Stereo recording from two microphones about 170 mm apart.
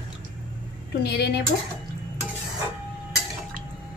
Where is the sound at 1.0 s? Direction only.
75° left (ahead or behind).